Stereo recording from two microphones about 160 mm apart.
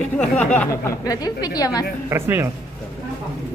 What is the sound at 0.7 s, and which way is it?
A woman's voice, 20° left (ahead or behind).